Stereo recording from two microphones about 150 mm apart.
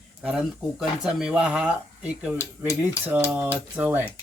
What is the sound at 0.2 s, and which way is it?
Speech, 5° right (ahead or behind).